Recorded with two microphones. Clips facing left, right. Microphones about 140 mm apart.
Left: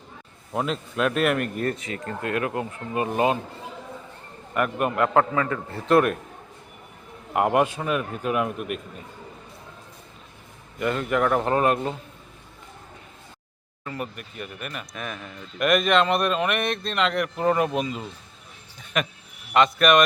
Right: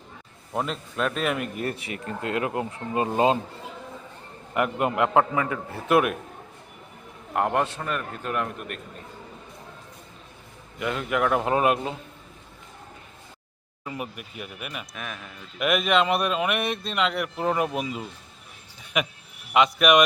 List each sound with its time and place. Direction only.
0.5 s speech: centre (ahead or behind)
1.9 s speech: 20° right (ahead or behind)
4.5 s speech: 20° right (ahead or behind)
7.3 s a man's voice: 10° left (ahead or behind)
10.8 s speech: centre (ahead or behind)
13.8 s speech: 10° right (ahead or behind)